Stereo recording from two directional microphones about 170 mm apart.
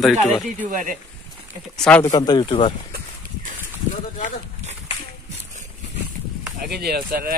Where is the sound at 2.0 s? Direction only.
25° left (ahead or behind).